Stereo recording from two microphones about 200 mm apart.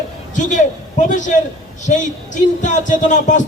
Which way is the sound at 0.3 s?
40° left (ahead or behind).